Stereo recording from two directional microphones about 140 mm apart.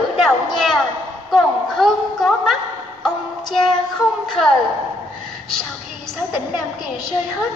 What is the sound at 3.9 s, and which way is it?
Speech, centre (ahead or behind).